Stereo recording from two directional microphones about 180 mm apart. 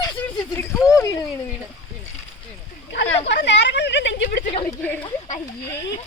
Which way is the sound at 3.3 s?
75° left (ahead or behind).